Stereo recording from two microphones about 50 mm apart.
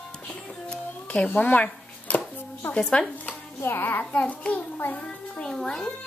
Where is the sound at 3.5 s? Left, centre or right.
Left.